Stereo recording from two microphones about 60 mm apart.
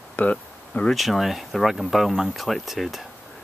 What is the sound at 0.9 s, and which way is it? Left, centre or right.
Speech, centre.